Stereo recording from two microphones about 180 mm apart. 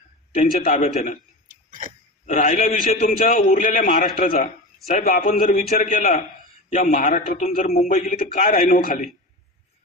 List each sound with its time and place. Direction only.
0.3 s a man's voice: 50° left (ahead or behind)
1.5 s a sound: 50° right (ahead or behind)
2.2 s a man's voice: 45° left (ahead or behind)
7.9 s a man's voice: 50° left (ahead or behind)